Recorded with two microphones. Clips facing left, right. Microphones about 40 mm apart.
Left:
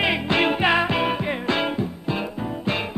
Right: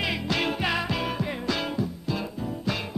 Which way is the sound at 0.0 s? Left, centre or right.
Left.